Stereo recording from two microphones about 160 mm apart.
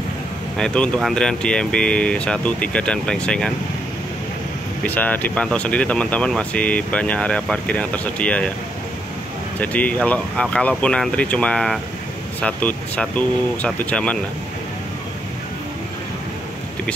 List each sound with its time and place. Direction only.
0.6 s speech: 5° left (ahead or behind)
4.8 s speech: 10° left (ahead or behind)
9.6 s speech: 10° left (ahead or behind)